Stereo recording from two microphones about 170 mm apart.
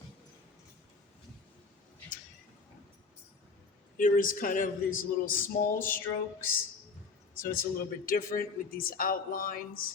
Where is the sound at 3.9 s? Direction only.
50° left (ahead or behind).